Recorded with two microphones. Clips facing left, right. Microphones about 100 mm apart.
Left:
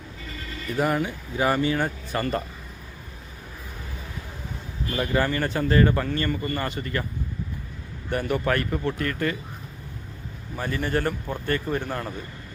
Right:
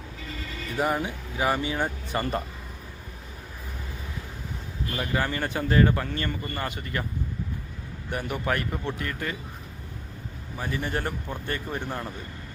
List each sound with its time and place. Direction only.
0.8 s speech: 15° right (ahead or behind)
4.9 s speech: 5° right (ahead or behind)
8.1 s speech: 10° right (ahead or behind)
10.6 s speech: 15° right (ahead or behind)